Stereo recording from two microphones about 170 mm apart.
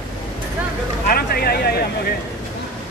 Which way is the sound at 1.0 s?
65° left (ahead or behind).